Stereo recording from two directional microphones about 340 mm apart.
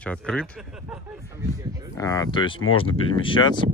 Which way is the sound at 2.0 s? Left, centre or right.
Centre.